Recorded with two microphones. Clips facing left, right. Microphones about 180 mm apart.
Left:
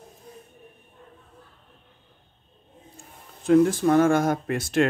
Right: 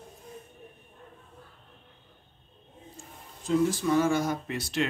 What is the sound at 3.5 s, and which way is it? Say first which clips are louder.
Speech: left 7 dB; 55° left (ahead or behind).